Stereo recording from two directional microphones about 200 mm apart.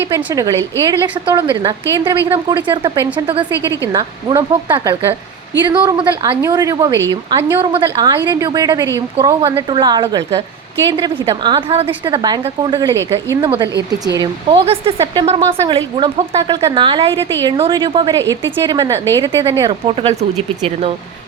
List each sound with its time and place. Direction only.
0.0 s a woman's voice: 10° right (ahead or behind)